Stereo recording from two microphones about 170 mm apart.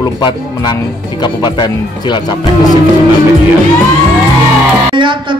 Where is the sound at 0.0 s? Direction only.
25° left (ahead or behind).